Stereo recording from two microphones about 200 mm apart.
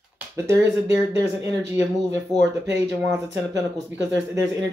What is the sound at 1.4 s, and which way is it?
Speech, 15° right (ahead or behind).